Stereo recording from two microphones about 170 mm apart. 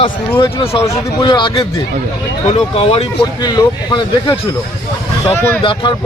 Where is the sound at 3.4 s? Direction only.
25° left (ahead or behind).